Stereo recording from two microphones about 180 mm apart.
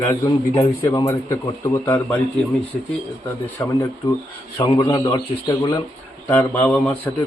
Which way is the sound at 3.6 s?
10° left (ahead or behind).